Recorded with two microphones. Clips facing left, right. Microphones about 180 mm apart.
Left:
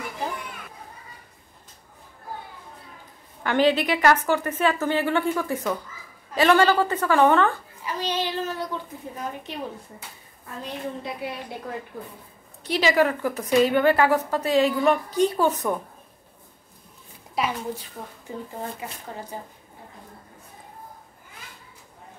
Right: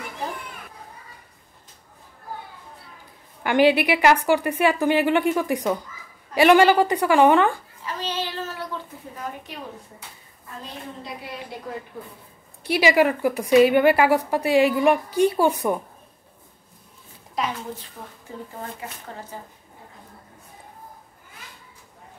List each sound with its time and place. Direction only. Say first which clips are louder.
3.4 s a woman's voice: right 3 dB; 10° right (ahead or behind)
7.8 s child singing: left 2 dB; 15° left (ahead or behind)
12.6 s a woman's voice: right 2 dB; 10° right (ahead or behind)
17.4 s a woman's voice: left 1 dB; 10° left (ahead or behind)
18.3 s speech: left 2 dB; 20° left (ahead or behind)